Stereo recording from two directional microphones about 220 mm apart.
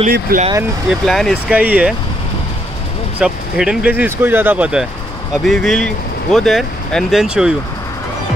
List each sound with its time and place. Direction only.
0.0 s speech: 35° right (ahead or behind)
0.8 s speech: centre (ahead or behind)
3.2 s speech: 5° right (ahead or behind)